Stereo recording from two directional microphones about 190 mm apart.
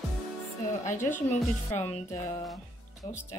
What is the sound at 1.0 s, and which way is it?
Speech, 40° left (ahead or behind).